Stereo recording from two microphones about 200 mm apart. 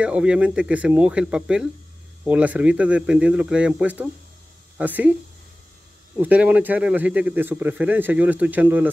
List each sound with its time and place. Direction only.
0.0 s a man's voice: 5° right (ahead or behind)
6.1 s a man's voice: 10° right (ahead or behind)